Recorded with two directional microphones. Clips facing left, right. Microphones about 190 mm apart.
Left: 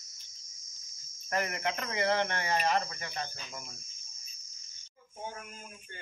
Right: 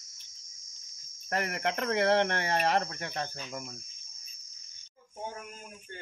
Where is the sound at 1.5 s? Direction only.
60° right (ahead or behind).